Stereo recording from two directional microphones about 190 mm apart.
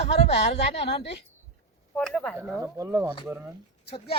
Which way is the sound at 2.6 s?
15° right (ahead or behind).